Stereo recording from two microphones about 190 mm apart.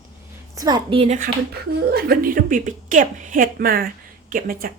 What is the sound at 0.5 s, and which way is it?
Speech, 20° right (ahead or behind).